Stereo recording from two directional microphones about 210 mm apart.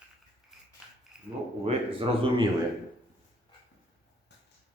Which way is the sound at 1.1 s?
5° right (ahead or behind).